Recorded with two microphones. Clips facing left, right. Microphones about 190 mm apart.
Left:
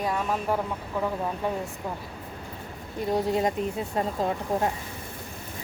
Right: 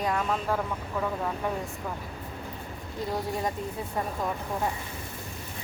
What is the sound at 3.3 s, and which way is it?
Speech, 20° left (ahead or behind).